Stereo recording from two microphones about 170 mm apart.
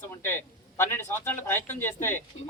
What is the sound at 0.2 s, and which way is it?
A man's voice, 15° left (ahead or behind).